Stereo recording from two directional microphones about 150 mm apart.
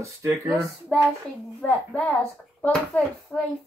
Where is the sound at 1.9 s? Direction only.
10° left (ahead or behind).